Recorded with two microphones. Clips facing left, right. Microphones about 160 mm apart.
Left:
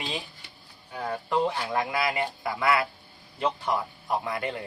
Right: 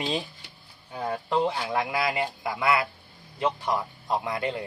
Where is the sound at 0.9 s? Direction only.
15° right (ahead or behind); by 2.2 s centre (ahead or behind).